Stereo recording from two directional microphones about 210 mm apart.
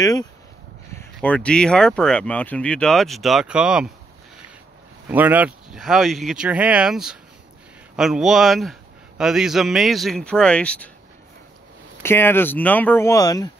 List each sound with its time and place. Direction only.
0.0 s speech: 15° left (ahead or behind)
1.2 s speech: 5° left (ahead or behind)
5.0 s speech: 10° right (ahead or behind)
12.0 s speech: 10° left (ahead or behind)